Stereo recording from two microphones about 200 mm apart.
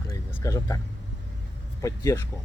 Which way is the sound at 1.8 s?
15° left (ahead or behind).